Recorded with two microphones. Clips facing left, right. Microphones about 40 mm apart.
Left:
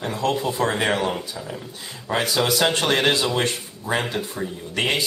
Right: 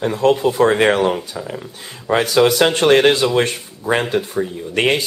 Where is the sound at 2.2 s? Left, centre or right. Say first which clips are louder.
Right 7 dB; right.